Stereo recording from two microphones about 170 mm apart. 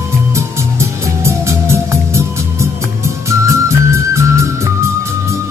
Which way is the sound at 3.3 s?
15° right (ahead or behind).